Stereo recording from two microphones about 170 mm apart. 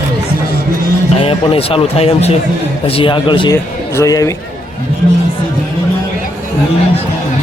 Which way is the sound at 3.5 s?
20° left (ahead or behind).